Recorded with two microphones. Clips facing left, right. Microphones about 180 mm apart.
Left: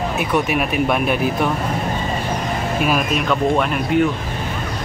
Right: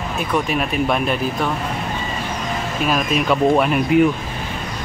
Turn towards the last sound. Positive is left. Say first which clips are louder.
# right 2 dB
turn(degrees=30)  # may be behind; listen again after turning